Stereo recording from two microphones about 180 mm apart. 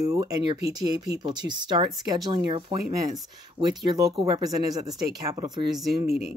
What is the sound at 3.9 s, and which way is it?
Speech, 20° right (ahead or behind).